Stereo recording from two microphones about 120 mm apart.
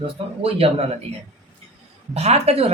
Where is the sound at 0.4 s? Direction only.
55° right (ahead or behind).